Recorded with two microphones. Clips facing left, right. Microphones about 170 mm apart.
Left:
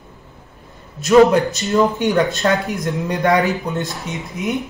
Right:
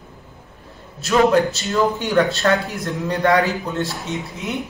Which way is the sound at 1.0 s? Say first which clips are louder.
Left 4 dB; 15° left (ahead or behind).